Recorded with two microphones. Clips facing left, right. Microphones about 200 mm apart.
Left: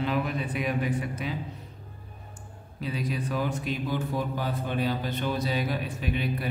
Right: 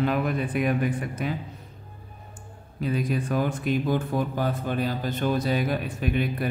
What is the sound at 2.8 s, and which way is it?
Speech, 50° right (ahead or behind).